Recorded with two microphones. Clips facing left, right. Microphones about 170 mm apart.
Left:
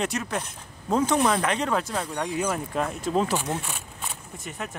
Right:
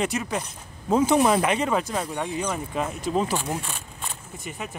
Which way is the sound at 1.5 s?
5° right (ahead or behind).